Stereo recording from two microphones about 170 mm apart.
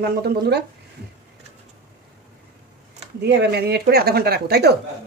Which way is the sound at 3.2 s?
75° right (ahead or behind).